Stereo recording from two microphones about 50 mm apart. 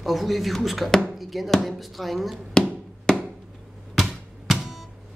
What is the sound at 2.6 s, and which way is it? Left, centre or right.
Music, centre.